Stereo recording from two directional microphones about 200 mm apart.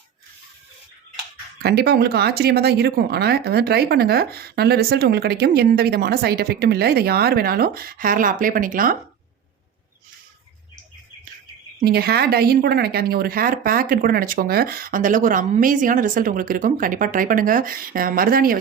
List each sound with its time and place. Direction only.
1.6 s speech: 55° right (ahead or behind)
11.8 s speech: 50° right (ahead or behind)